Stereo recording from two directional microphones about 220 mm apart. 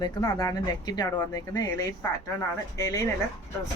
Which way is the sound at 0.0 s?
15° left (ahead or behind).